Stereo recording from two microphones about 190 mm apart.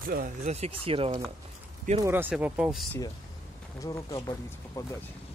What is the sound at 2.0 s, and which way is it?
Speech, 10° right (ahead or behind).